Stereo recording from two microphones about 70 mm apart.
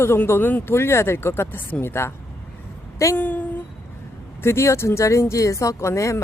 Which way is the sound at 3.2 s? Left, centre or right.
Left.